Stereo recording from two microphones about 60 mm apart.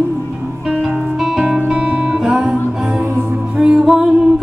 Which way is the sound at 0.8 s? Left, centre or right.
Centre.